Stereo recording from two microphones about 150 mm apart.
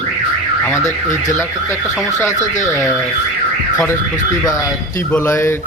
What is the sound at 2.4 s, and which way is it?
Speech, 55° left (ahead or behind).